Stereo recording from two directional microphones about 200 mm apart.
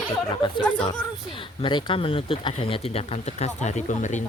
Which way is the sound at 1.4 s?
25° left (ahead or behind).